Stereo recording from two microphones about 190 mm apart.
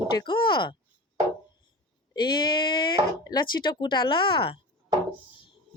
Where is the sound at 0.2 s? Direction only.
25° left (ahead or behind).